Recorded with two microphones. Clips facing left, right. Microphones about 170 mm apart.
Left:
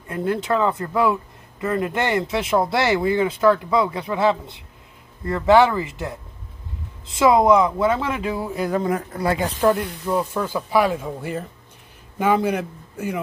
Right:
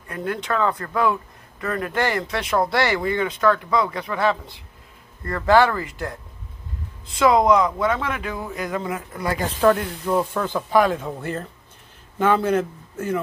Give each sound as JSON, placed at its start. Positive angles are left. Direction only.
{"t": 0.1, "sound": "speech", "side_deg": 25}
{"t": 9.8, "sound": "speech", "side_deg": 0}